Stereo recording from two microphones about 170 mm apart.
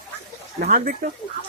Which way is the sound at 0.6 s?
55° right (ahead or behind).